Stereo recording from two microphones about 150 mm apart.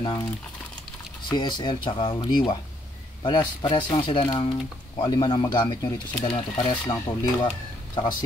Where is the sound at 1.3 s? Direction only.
30° left (ahead or behind).